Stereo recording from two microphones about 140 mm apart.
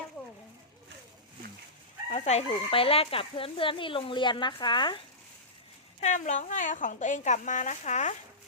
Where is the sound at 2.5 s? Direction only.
40° left (ahead or behind).